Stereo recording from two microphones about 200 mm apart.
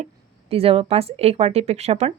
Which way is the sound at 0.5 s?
30° right (ahead or behind).